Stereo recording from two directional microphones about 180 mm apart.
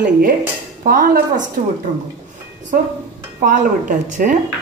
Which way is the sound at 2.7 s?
50° right (ahead or behind).